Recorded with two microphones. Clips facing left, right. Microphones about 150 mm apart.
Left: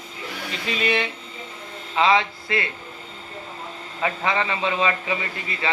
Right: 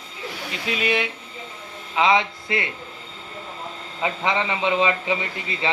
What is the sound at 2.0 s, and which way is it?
Speech, 20° right (ahead or behind).